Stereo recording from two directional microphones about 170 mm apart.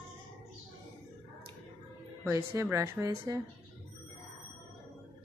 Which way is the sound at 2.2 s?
15° right (ahead or behind).